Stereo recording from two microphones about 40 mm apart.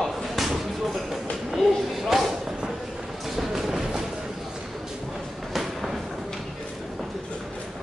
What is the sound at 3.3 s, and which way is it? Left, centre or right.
Music, centre.